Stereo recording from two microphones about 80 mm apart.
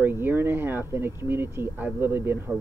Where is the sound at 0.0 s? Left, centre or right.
Right.